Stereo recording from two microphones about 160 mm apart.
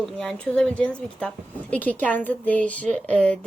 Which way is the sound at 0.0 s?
5° left (ahead or behind).